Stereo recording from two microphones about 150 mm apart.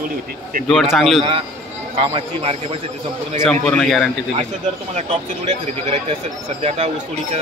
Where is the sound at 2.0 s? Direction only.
40° right (ahead or behind).